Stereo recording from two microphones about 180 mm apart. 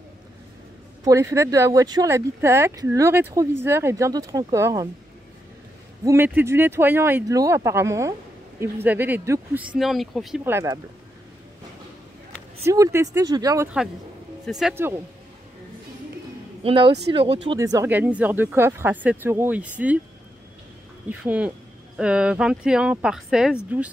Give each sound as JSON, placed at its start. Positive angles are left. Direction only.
{"t": 1.0, "sound": "speech", "side_deg": -15}
{"t": 6.0, "sound": "speech", "side_deg": -10}
{"t": 9.8, "sound": "speech", "side_deg": 0}
{"t": 10.4, "sound": "speech", "side_deg": -15}
{"t": 12.6, "sound": "speech", "side_deg": -15}
{"t": 14.4, "sound": "speech", "side_deg": 0}
{"t": 16.6, "sound": "speech", "side_deg": -30}
{"t": 17.6, "sound": "speech", "side_deg": -15}
{"t": 21.2, "sound": "speech", "side_deg": -10}